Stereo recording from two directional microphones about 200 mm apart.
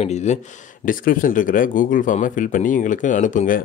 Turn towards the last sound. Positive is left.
turn(degrees=40)  # may be behind; listen again after turning